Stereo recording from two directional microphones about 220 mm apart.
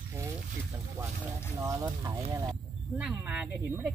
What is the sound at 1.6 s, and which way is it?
Speech, 15° right (ahead or behind).